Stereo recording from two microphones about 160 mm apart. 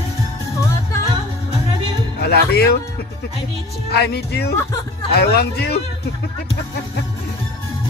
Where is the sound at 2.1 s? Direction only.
80° left.